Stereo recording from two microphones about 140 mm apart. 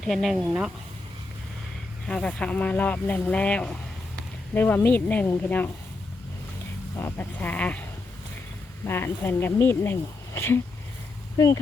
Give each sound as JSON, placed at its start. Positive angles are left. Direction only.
{"t": 0.0, "sound": "speech", "side_deg": 0}
{"t": 2.0, "sound": "speech", "side_deg": 5}
{"t": 6.9, "sound": "speech", "side_deg": 15}